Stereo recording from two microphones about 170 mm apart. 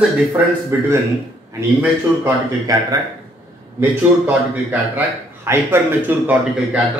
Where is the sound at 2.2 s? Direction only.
20° right (ahead or behind).